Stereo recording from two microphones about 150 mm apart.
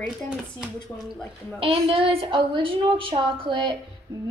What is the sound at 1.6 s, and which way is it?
A woman's voice, 35° right (ahead or behind).